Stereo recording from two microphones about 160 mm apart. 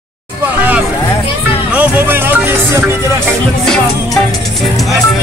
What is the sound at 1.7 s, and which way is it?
Speech, 10° right (ahead or behind).